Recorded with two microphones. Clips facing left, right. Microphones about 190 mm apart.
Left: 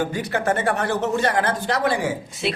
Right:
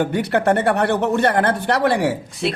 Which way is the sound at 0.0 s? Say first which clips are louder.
Right 5 dB; 65° right (ahead or behind).